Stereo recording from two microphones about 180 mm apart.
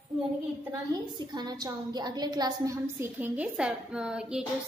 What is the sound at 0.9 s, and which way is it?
A woman's voice, 25° right (ahead or behind).